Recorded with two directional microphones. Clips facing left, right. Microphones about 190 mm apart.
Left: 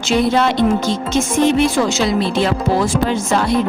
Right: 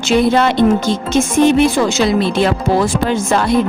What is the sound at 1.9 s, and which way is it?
Speech, 55° right (ahead or behind).